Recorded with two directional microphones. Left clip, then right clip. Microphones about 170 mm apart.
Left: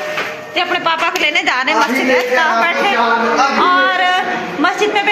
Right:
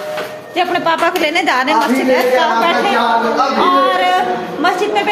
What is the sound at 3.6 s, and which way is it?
A man's voice, centre (ahead or behind).